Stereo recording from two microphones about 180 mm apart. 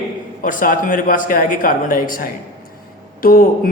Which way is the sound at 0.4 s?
50° left (ahead or behind).